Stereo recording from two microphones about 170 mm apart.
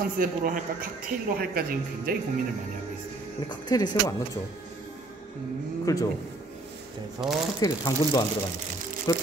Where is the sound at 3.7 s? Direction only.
25° left (ahead or behind).